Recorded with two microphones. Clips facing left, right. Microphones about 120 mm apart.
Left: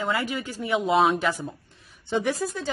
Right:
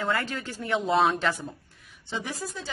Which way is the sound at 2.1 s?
60° left (ahead or behind).